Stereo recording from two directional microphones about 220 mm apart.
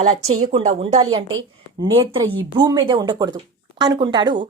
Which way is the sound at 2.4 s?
20° right (ahead or behind).